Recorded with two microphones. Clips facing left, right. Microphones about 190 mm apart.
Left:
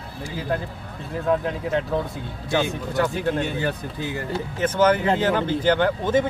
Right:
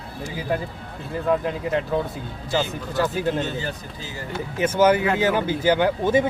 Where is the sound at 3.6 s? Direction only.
60° left (ahead or behind).